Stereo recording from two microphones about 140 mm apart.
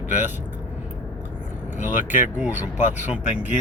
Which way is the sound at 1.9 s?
65° left (ahead or behind).